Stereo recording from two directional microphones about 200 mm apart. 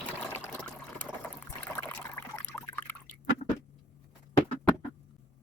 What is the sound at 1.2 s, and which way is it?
Rowboat, 10° left (ahead or behind).